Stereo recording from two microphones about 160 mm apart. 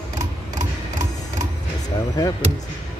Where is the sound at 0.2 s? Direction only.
20° right (ahead or behind).